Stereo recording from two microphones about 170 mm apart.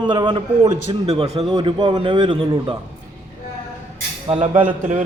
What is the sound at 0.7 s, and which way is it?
Speech, 45° right (ahead or behind).